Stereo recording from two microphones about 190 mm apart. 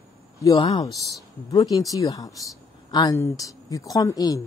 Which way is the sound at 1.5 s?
20° left (ahead or behind).